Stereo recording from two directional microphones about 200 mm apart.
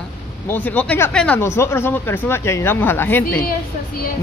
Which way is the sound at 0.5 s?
10° left (ahead or behind).